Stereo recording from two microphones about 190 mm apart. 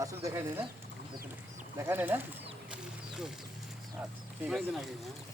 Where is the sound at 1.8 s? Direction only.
10° right (ahead or behind).